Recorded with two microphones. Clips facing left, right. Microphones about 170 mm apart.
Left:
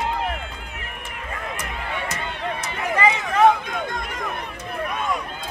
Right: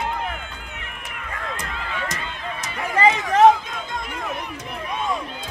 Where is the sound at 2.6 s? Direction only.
40° right (ahead or behind).